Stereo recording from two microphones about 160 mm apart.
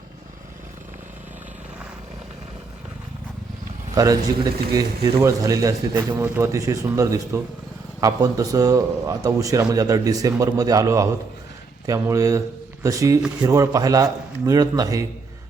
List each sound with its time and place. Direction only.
3.9 s a man's voice: 25° right (ahead or behind)